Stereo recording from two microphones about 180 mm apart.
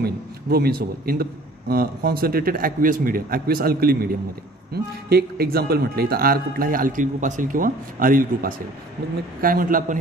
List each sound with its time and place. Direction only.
0.0 s a man's voice: 60° right (ahead or behind)
5.1 s a man's voice: 60° right (ahead or behind)